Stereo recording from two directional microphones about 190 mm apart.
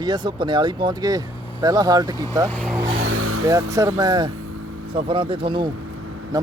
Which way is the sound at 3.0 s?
90° right.